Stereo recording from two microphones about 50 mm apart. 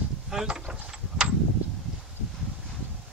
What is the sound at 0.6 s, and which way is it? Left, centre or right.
Speech, right.